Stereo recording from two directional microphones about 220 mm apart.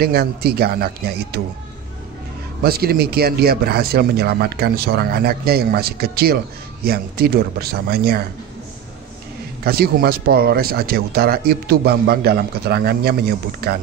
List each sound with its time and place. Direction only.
0.0 s speech: 45° right (ahead or behind)
2.6 s speech: 45° right (ahead or behind)
9.7 s speech: 45° right (ahead or behind)